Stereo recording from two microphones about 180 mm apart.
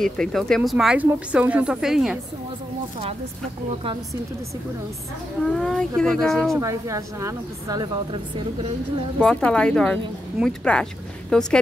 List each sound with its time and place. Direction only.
0.0 s speech: centre (ahead or behind)
5.4 s speech: centre (ahead or behind)
6.5 s a woman's voice: 15° right (ahead or behind)
9.2 s speech: 5° left (ahead or behind)